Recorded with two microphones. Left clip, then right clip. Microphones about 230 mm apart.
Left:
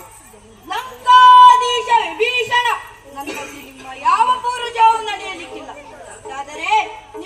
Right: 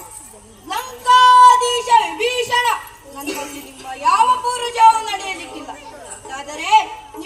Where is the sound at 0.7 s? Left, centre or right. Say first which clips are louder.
Left 2 dB; right.